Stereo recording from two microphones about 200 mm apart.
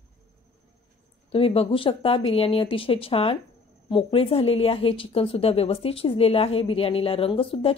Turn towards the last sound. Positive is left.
turn(degrees=25)  # may be behind; listen again after turning